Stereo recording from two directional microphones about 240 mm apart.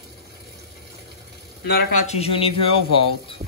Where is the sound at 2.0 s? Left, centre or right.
Left.